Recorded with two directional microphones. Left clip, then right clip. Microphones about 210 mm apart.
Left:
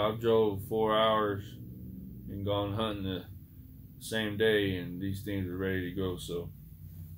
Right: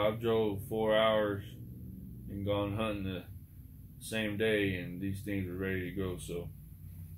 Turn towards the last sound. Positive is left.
turn(degrees=20)  # may be behind; listen again after turning